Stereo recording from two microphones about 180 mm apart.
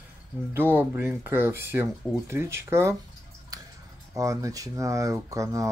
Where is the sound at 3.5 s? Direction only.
20° right (ahead or behind).